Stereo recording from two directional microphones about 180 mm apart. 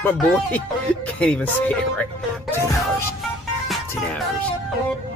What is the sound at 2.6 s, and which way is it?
Music, 15° left (ahead or behind).